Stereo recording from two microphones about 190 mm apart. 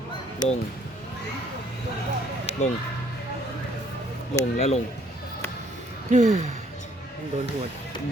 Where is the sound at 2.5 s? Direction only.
35° left (ahead or behind).